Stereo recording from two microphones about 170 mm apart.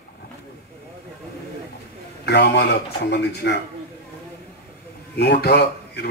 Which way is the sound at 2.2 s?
75° left (ahead or behind).